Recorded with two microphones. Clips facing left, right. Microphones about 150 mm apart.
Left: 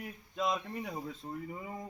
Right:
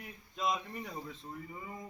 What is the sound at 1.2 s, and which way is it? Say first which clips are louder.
Speech: left 5 dB; 65° left (ahead or behind).